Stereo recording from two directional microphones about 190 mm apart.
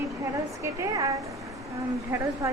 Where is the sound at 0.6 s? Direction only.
15° right (ahead or behind).